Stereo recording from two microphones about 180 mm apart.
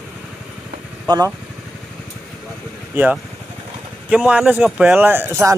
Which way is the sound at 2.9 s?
10° right (ahead or behind).